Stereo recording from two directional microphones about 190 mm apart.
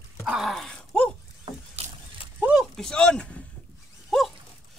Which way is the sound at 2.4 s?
5° right (ahead or behind).